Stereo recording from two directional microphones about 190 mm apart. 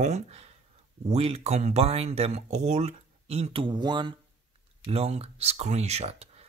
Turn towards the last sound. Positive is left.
turn(degrees=-35)  # may be behind; listen again after turning